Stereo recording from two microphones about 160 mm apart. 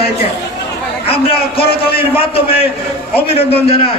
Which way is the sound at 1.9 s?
35° left (ahead or behind).